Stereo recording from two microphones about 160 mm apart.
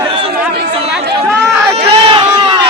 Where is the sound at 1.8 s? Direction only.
30° right (ahead or behind).